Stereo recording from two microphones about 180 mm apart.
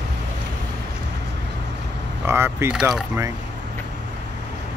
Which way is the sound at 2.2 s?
15° right (ahead or behind).